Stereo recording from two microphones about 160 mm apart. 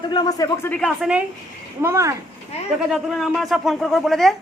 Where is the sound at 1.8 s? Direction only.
20° right (ahead or behind).